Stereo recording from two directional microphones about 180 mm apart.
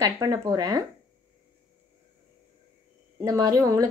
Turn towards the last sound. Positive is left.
turn(degrees=-15)  # may be behind; listen again after turning